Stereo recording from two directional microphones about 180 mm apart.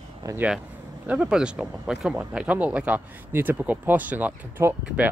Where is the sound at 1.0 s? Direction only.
5° right (ahead or behind).